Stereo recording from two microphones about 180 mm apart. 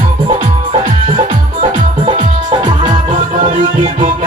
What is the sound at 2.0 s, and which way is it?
Music, 30° right (ahead or behind).